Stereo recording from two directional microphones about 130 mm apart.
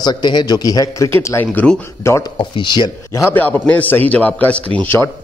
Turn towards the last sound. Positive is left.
turn(degrees=15)  # may be behind; listen again after turning